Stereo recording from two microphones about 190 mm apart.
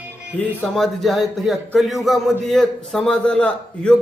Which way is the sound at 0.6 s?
Centre (ahead or behind).